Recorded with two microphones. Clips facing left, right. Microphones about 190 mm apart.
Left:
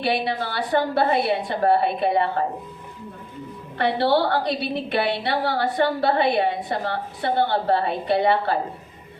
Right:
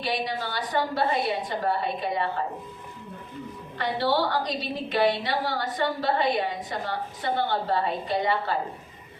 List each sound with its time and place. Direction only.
0.0 s a woman's voice: 60° left (ahead or behind)
3.8 s a woman's voice: 65° left (ahead or behind)